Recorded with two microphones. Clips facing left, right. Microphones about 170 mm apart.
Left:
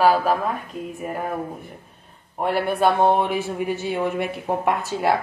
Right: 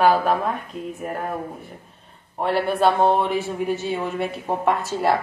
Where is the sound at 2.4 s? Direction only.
10° left (ahead or behind).